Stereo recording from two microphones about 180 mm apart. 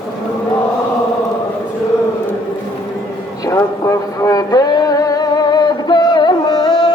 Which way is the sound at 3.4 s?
15° left (ahead or behind).